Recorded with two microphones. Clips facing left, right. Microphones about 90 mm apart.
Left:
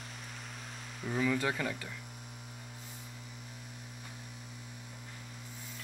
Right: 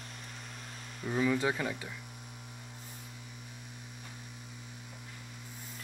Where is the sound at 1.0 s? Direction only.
5° right (ahead or behind).